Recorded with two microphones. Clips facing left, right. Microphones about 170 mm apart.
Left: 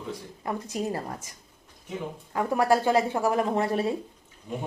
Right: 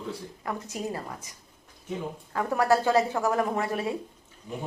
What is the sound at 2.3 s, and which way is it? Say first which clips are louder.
Speech: left 1 dB; 15° left (ahead or behind).